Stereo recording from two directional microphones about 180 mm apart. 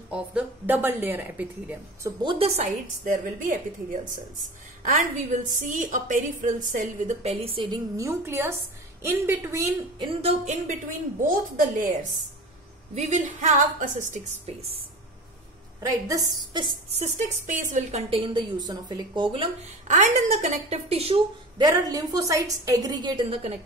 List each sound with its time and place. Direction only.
0.1 s speech: 5° right (ahead or behind)
2.2 s a woman's voice: 30° right (ahead or behind); by 4.2 s 50° right (ahead or behind)
5.7 s a woman's voice: 45° right (ahead or behind); by 10.3 s 25° right (ahead or behind)
10.4 s a woman's voice: 45° right (ahead or behind)
12.9 s a woman's voice: 40° right (ahead or behind)
15.8 s a woman's voice: 20° right (ahead or behind)
17.0 s a woman's voice: 45° right (ahead or behind); by 19.5 s 25° right (ahead or behind)
19.9 s a woman's voice: 45° right (ahead or behind)
21.6 s a woman's voice: 20° right (ahead or behind)